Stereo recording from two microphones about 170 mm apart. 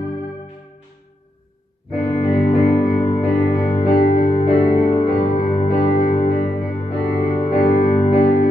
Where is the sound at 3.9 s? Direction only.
50° left (ahead or behind).